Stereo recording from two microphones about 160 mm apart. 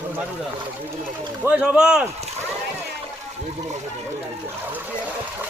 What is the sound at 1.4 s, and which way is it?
Speech, 10° right (ahead or behind).